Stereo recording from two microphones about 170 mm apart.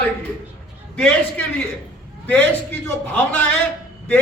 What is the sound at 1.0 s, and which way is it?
Speech, 5° left (ahead or behind).